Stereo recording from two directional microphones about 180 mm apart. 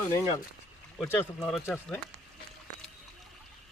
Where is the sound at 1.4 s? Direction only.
Centre (ahead or behind).